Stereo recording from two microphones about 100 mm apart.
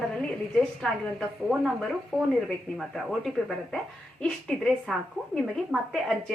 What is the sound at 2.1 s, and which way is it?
A woman's voice, centre (ahead or behind).